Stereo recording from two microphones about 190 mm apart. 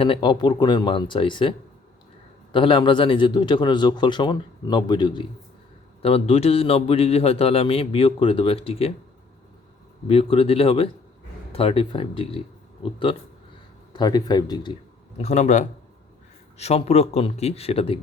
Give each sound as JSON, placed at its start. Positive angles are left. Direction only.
{"t": 0.0, "sound": "a man's voice", "side_deg": 25}
{"t": 10.1, "sound": "a man's voice", "side_deg": 30}
{"t": 15.2, "sound": "a man's voice", "side_deg": 35}